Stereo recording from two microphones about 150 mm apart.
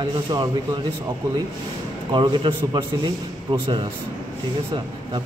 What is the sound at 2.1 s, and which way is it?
Speech, 30° right (ahead or behind).